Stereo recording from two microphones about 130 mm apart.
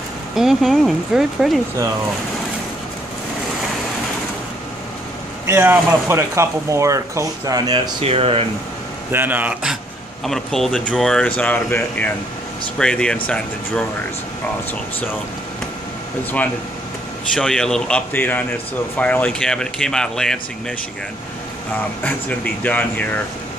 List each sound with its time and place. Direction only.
0.4 s speech: 5° right (ahead or behind)
5.5 s speech: 15° right (ahead or behind); by 7.9 s 30° right (ahead or behind)
8.0 s speech: 50° right (ahead or behind)
9.1 s speech: 15° right (ahead or behind); by 13.2 s 5° left (ahead or behind)
17.3 s speech: 5° left (ahead or behind)
22.0 s speech: 10° left (ahead or behind)